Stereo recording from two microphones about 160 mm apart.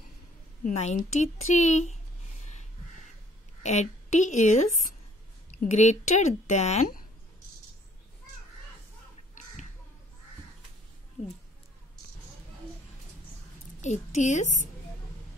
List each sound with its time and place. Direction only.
0.7 s speech: 50° left (ahead or behind)
3.6 s a woman's voice: 45° left (ahead or behind)
5.7 s speech: 45° left (ahead or behind)
13.7 s a woman's voice: 45° left (ahead or behind)